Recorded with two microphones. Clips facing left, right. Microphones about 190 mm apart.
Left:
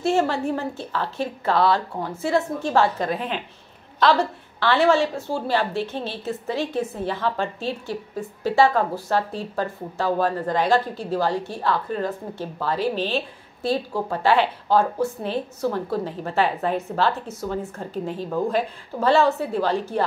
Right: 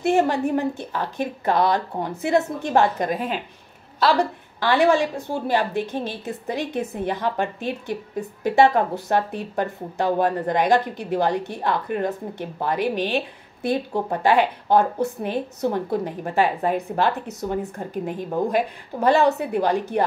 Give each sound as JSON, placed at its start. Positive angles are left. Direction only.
{"t": 0.0, "sound": "a woman's voice", "side_deg": -15}